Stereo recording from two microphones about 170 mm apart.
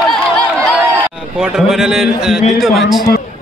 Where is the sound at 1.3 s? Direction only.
5° right (ahead or behind).